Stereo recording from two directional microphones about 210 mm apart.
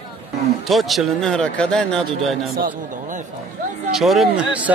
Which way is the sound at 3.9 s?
Centre (ahead or behind).